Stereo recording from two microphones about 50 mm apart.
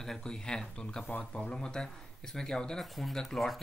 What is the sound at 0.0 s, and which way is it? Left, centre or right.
A man's voice, centre.